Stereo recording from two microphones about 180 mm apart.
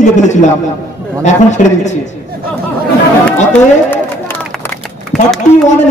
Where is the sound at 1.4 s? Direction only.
40° left (ahead or behind).